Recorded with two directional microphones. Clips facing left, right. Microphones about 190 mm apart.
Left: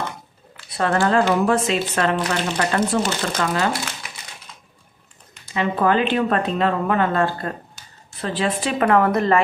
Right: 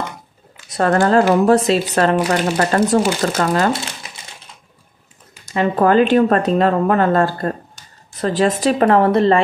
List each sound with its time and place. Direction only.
0.7 s speech: 45° right (ahead or behind)
5.4 s speech: 45° right (ahead or behind)